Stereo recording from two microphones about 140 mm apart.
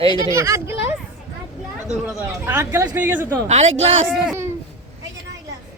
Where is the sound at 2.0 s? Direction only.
15° right (ahead or behind).